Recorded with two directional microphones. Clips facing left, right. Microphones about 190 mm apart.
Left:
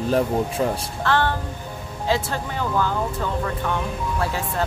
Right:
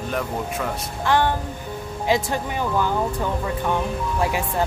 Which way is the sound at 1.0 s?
15° right (ahead or behind).